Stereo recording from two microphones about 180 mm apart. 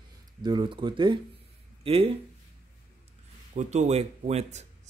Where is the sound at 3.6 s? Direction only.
40° right (ahead or behind).